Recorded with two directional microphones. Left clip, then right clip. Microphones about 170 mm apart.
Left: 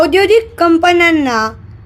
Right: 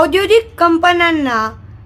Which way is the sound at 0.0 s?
10° left (ahead or behind).